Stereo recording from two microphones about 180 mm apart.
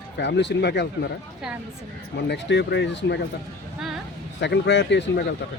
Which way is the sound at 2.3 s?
70° left (ahead or behind).